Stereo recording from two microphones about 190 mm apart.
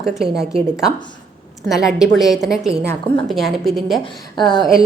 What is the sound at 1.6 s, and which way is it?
A woman's voice, centre (ahead or behind).